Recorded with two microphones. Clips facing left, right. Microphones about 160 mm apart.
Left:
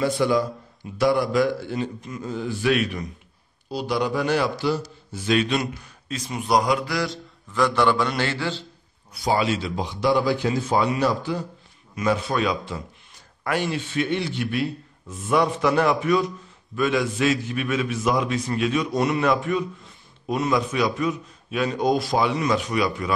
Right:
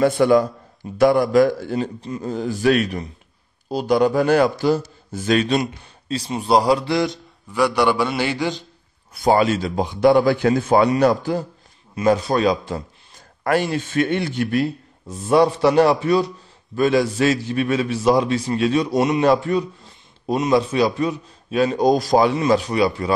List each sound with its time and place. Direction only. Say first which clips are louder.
0.0 s a man's voice: right 6 dB; 55° right (ahead or behind)
5.6 s a man's voice: right 4 dB; 30° right (ahead or behind)
7.5 s a man's voice: right 2 dB; 10° right (ahead or behind)
9.1 s a man's voice: right 6 dB; 50° right (ahead or behind)
11.9 s a man's voice: right 5 dB; 35° right (ahead or behind)